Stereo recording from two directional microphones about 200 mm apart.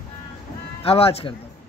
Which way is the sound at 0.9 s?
30° left (ahead or behind).